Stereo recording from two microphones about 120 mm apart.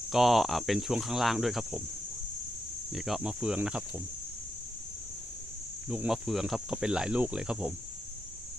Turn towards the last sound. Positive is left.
turn(degrees=-5)  # may be behind; listen again after turning